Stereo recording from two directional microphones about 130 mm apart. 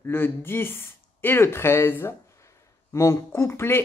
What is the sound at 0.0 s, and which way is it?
Speech, 15° left (ahead or behind).